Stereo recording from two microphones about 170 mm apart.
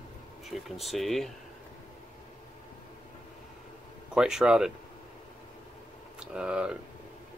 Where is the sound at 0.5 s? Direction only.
Centre (ahead or behind).